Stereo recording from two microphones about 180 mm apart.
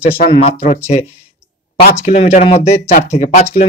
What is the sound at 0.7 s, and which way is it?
Speech, 40° left (ahead or behind).